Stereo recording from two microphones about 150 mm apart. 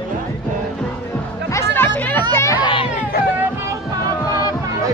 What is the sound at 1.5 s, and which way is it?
Music, 15° left (ahead or behind).